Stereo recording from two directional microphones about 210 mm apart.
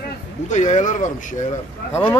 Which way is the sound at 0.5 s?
35° left (ahead or behind).